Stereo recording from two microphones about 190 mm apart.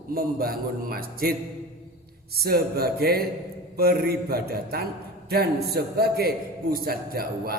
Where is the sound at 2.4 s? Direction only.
55° right (ahead or behind).